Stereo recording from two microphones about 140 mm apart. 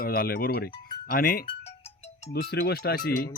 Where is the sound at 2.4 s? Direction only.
90° left.